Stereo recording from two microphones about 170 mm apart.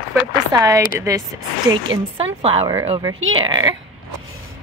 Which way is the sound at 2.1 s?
35° right (ahead or behind).